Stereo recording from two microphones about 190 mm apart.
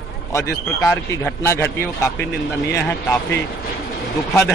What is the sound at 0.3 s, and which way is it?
Speech, 15° left (ahead or behind).